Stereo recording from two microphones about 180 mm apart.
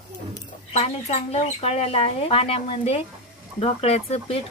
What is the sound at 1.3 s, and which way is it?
Speech, 35° left (ahead or behind).